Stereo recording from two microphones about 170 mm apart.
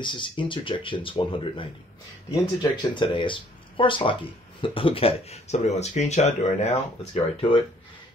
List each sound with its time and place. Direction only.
0.0 s speech: 30° left (ahead or behind)